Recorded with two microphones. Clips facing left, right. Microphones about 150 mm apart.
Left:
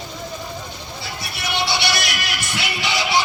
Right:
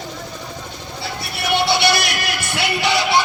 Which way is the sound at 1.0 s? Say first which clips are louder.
Right 5 dB; 55° right (ahead or behind).